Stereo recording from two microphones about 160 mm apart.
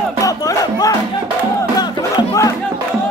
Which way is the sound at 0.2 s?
20° left (ahead or behind).